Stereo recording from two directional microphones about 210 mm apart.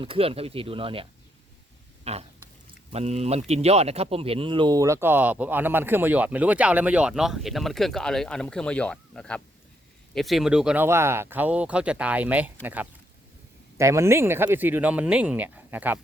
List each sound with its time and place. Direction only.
0.0 s speech: 25° right (ahead or behind)
2.1 s a sound: 30° right (ahead or behind)
2.9 s speech: 30° right (ahead or behind); by 16.0 s 10° right (ahead or behind)